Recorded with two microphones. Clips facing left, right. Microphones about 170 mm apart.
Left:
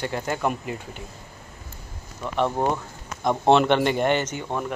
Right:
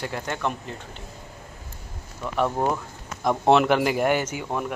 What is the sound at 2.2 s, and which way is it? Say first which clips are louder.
Speech: left 1 dB; centre (ahead or behind).